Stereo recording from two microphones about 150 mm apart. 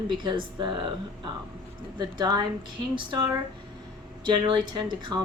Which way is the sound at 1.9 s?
30° right (ahead or behind).